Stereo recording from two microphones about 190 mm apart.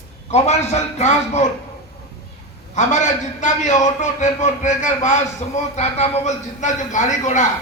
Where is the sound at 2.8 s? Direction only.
40° left (ahead or behind).